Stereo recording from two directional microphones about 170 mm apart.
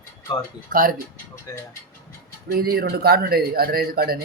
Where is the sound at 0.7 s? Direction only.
55° right (ahead or behind).